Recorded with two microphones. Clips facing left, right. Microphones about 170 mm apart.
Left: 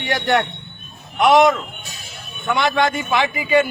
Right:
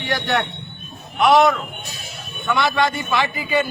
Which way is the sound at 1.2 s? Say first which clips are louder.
Left 1 dB; 20° left (ahead or behind).